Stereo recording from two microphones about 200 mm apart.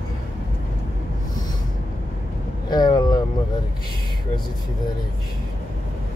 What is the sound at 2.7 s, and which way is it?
Vehicle, 20° left (ahead or behind).